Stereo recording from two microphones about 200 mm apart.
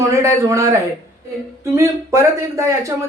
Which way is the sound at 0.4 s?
15° right (ahead or behind).